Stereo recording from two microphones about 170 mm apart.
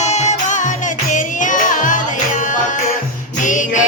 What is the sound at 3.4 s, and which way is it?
Music, 50° left (ahead or behind).